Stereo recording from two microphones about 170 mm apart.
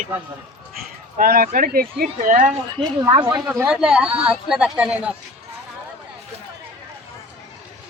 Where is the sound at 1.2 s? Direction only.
60° right (ahead or behind).